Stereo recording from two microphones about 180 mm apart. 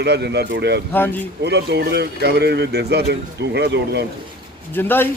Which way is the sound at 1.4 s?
70° right (ahead or behind).